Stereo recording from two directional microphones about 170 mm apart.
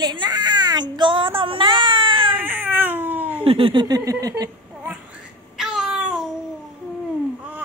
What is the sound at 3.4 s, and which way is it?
Speech, 30° right (ahead or behind).